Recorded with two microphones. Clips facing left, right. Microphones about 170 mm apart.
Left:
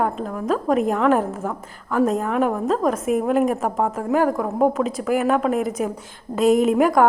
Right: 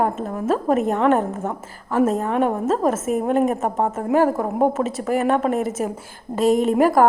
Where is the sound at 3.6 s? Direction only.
25° right (ahead or behind).